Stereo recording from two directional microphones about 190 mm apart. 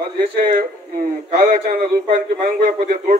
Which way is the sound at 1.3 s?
55° right (ahead or behind).